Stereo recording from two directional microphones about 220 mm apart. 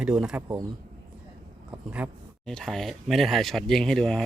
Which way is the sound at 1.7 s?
5° right (ahead or behind).